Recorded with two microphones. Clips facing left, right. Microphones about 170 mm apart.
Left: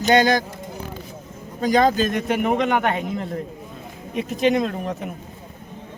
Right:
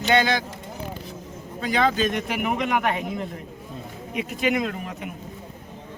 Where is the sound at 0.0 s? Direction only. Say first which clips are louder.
Left 4 dB; 40° left (ahead or behind).